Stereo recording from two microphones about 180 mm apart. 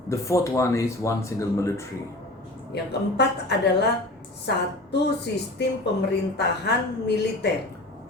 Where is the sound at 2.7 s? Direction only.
70° left (ahead or behind).